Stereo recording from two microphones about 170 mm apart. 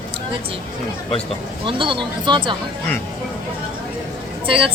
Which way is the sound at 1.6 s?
30° right (ahead or behind).